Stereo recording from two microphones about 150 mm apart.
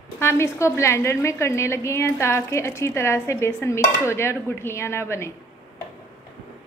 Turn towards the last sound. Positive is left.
turn(degrees=15)  # may be behind; listen again after turning